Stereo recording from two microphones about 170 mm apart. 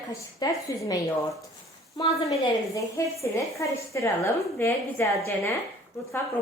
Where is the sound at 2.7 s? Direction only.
20° left (ahead or behind).